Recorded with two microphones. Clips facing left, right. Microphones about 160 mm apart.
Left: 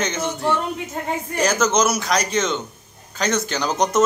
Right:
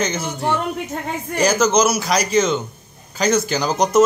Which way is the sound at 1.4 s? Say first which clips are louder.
Right 3 dB; centre (ahead or behind).